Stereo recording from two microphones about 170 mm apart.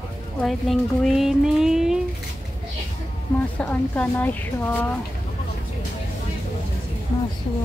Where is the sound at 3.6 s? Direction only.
10° left (ahead or behind).